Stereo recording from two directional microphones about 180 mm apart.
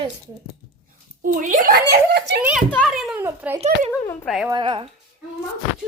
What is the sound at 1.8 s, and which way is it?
Speech, 65° right (ahead or behind).